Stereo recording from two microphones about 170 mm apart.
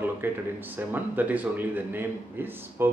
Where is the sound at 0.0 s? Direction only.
10° right (ahead or behind).